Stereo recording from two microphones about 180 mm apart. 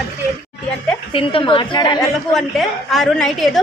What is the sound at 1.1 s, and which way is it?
Speech, 30° left (ahead or behind).